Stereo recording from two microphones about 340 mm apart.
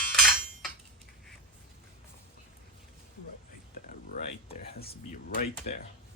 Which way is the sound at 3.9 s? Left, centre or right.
Left.